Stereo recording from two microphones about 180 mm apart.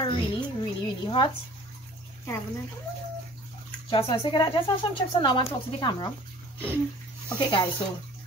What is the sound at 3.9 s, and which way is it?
Speech, 30° left (ahead or behind).